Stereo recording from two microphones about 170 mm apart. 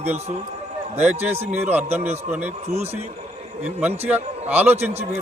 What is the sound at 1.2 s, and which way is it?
Speech, 40° right (ahead or behind).